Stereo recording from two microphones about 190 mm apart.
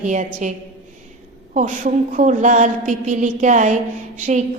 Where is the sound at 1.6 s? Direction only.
40° right (ahead or behind).